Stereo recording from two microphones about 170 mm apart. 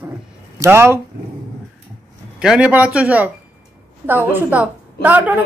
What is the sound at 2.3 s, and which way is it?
Speech, 5° right (ahead or behind).